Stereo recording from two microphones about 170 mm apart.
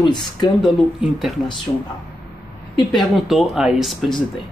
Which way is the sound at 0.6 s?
Centre (ahead or behind).